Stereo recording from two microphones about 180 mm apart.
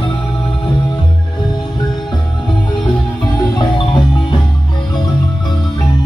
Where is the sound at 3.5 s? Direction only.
25° left (ahead or behind).